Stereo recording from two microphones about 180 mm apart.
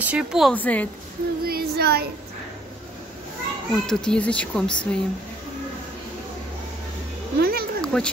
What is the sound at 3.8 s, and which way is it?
Speech, 5° left (ahead or behind).